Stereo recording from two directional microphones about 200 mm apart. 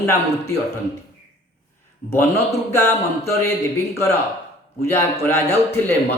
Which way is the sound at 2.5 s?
15° left (ahead or behind).